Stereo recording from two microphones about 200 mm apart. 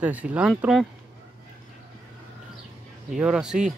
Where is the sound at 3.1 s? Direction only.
5° right (ahead or behind).